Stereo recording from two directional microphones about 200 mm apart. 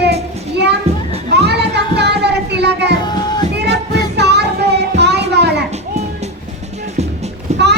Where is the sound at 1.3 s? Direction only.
55° right (ahead or behind).